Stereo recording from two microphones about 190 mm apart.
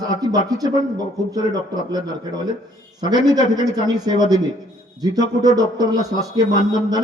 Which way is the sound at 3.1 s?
20° right (ahead or behind).